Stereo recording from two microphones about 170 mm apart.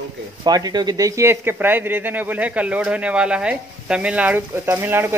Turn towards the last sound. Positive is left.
turn(degrees=-15)  # may be behind; listen again after turning